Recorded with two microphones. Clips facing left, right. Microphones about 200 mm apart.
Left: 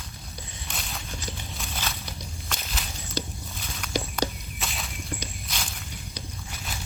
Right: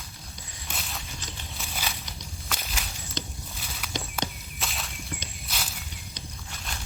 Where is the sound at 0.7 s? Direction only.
Centre (ahead or behind).